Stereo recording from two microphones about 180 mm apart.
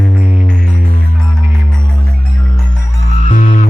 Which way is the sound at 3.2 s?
45° left (ahead or behind).